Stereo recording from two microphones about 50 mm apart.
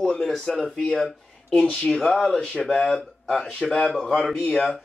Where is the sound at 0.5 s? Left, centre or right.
Centre.